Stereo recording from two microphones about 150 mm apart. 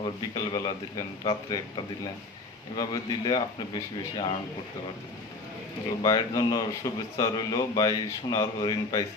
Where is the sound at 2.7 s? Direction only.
25° left (ahead or behind).